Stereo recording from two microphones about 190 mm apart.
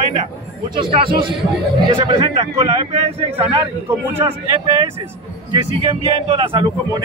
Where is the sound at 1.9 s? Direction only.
30° right (ahead or behind).